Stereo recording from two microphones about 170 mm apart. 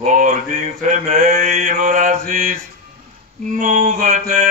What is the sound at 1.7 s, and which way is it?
Mantra, 55° right (ahead or behind).